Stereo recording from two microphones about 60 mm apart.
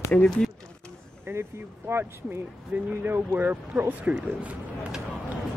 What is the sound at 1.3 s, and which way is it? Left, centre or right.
Speech, right.